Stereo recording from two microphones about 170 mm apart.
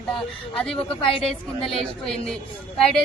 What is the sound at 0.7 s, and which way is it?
Speech, 30° left (ahead or behind).